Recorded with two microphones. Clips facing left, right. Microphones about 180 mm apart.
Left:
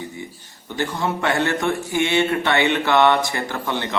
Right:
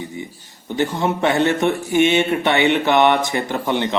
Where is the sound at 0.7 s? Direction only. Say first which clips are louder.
Right 4 dB; 20° right (ahead or behind).